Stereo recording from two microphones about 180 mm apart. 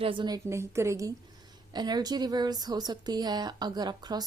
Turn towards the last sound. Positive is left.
turn(degrees=-25)  # may be behind; listen again after turning